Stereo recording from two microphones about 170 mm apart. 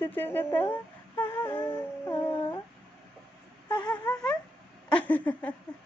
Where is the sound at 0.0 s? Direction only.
10° left (ahead or behind).